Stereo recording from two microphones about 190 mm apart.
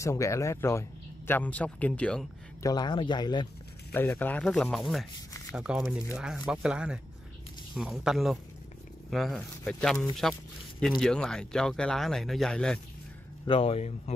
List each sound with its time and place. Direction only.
0.0 s speech: 15° left (ahead or behind)
2.6 s speech: 20° left (ahead or behind)
3.9 s speech: 10° left (ahead or behind)
13.5 s speech: 30° left (ahead or behind)